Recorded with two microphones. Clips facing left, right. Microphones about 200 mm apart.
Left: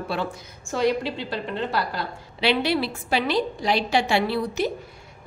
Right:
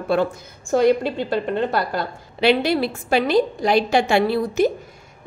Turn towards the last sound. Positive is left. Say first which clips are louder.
# right 6 dB
turn(degrees=-50)  # may be behind; listen again after turning